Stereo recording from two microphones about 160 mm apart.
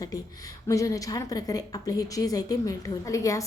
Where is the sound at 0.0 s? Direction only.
20° left (ahead or behind).